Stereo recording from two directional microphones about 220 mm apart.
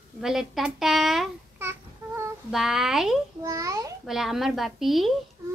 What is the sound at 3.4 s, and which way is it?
Speech, 15° right (ahead or behind).